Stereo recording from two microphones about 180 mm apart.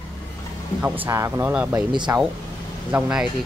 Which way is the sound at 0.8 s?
10° right (ahead or behind).